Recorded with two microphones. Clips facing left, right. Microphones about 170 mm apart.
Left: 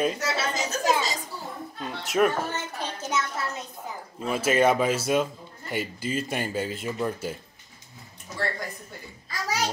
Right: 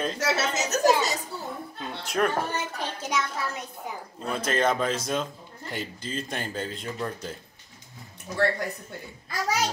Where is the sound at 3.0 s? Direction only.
15° right (ahead or behind).